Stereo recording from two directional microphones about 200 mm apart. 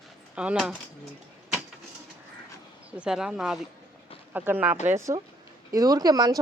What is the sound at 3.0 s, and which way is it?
Speech, 5° right (ahead or behind).